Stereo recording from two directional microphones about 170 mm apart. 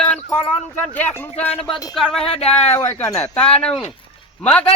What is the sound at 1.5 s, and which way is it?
Speech, 35° left (ahead or behind).